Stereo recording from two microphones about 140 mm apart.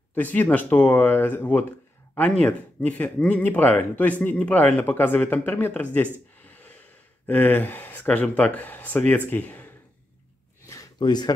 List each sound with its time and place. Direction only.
0.1 s speech: 10° left (ahead or behind)
10.7 s gasp: 25° left (ahead or behind)